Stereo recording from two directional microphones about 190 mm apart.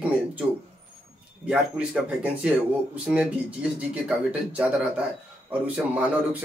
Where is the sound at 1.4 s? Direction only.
5° right (ahead or behind).